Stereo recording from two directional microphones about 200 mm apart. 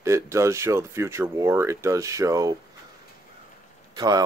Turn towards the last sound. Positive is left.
turn(degrees=-20)  # may be behind; listen again after turning